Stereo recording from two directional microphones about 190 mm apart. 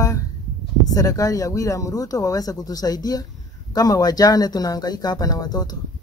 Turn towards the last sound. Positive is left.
turn(degrees=20)  # may be behind; listen again after turning